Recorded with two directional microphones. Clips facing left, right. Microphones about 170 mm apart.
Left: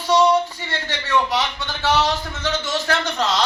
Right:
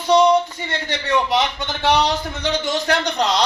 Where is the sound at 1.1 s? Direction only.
20° right (ahead or behind).